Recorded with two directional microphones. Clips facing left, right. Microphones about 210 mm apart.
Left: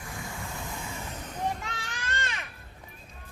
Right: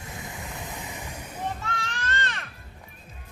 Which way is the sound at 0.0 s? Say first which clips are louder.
Even; 20° right (ahead or behind).